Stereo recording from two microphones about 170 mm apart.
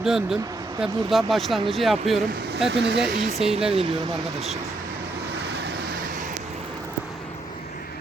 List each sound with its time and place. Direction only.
0.0 s speech: centre (ahead or behind)
3.7 s speech: 35° right (ahead or behind)
5.5 s vehicle: 75° right (ahead or behind)